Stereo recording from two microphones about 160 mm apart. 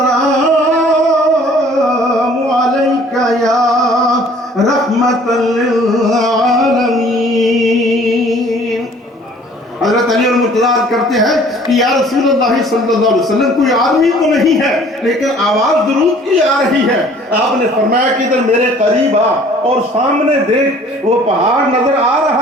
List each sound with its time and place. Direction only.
6.1 s music: centre (ahead or behind)
9.8 s a man's voice: centre (ahead or behind)